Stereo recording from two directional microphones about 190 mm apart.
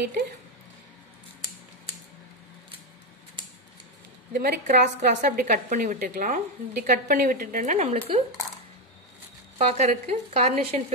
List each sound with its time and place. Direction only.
4.3 s a woman's voice: 55° right (ahead or behind); by 8.2 s 35° right (ahead or behind)
9.6 s speech: 35° right (ahead or behind)